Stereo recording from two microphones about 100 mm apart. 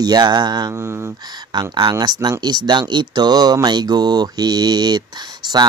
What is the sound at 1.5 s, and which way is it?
Speech, 45° right (ahead or behind).